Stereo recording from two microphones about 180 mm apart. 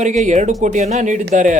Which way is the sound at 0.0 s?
40° right (ahead or behind).